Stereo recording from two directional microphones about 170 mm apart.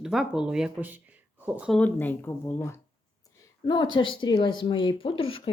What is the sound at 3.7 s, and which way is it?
Speech, 30° left (ahead or behind).